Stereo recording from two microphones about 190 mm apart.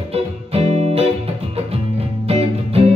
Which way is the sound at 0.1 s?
30° right (ahead or behind).